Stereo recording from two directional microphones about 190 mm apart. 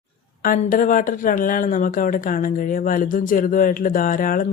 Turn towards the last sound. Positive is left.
turn(degrees=45)  # may be behind; listen again after turning